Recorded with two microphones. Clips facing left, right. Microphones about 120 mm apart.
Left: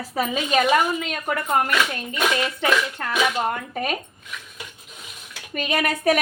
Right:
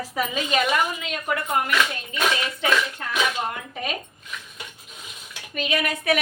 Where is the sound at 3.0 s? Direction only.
50° left (ahead or behind).